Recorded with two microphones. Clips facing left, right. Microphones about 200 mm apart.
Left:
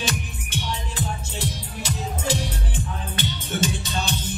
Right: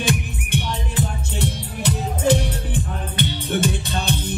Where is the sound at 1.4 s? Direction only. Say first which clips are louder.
Right 10 dB; 60° right (ahead or behind).